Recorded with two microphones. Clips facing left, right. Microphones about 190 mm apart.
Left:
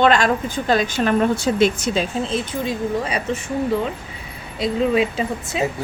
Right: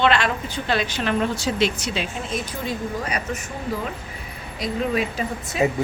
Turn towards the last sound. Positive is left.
turn(degrees=25)  # may be behind; listen again after turning